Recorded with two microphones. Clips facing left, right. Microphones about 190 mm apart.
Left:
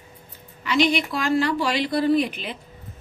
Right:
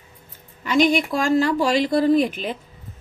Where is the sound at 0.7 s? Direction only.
45° right (ahead or behind).